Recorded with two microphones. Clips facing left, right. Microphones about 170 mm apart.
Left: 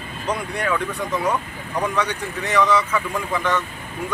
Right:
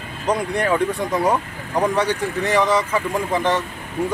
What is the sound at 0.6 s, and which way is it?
Speech, 40° right (ahead or behind).